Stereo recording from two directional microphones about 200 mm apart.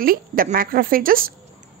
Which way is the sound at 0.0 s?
45° right (ahead or behind).